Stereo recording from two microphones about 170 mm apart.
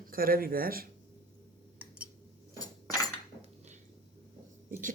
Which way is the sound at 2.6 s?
20° left (ahead or behind).